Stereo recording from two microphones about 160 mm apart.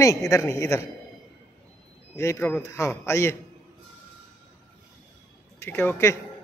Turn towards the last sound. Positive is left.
turn(degrees=15)  # may be behind; listen again after turning